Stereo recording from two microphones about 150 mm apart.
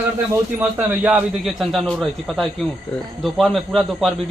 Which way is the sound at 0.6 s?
10° right (ahead or behind).